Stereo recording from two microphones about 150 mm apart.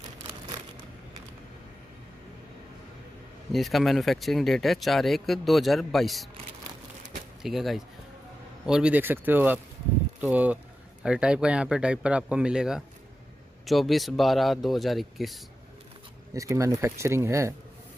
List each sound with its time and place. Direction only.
3.5 s speech: centre (ahead or behind)
7.4 s speech: centre (ahead or behind)
16.3 s speech: 20° right (ahead or behind)